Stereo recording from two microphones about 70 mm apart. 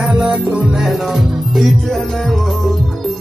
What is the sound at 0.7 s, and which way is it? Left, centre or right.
Music, centre.